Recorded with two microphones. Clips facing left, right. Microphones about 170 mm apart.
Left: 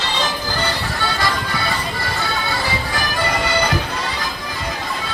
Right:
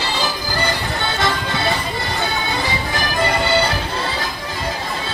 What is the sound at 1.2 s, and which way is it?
Music, 25° right (ahead or behind).